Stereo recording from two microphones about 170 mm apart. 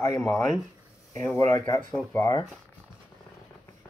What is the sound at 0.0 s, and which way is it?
Speech, 20° left (ahead or behind).